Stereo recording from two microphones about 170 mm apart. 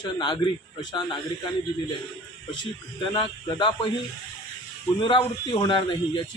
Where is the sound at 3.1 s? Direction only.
25° left (ahead or behind).